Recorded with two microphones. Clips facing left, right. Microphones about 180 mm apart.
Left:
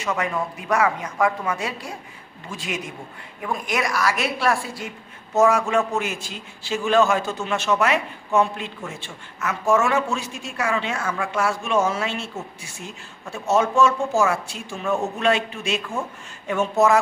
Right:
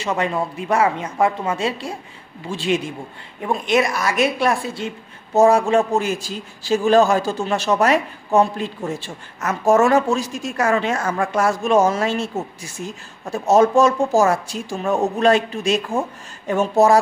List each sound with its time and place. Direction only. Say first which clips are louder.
0.0 s a woman's voice: right 3 dB; 30° right (ahead or behind)